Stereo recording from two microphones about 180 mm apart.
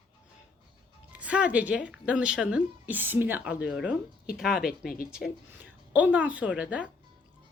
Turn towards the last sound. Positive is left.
turn(degrees=-5)  # may be behind; listen again after turning